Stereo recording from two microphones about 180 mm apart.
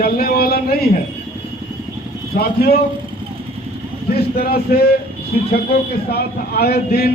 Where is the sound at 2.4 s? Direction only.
60° left (ahead or behind).